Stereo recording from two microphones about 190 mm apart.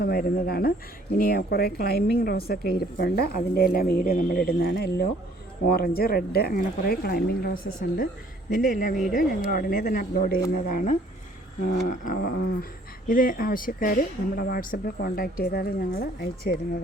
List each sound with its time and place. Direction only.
0.0 s a woman's voice: 50° left (ahead or behind)